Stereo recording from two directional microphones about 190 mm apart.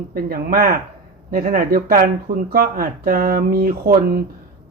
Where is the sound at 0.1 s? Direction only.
50° right (ahead or behind).